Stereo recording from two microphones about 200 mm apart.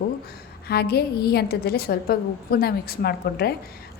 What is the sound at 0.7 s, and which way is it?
A woman's voice, 50° left (ahead or behind).